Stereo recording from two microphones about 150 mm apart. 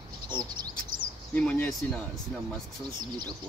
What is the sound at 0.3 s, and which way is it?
Bird, 30° right (ahead or behind).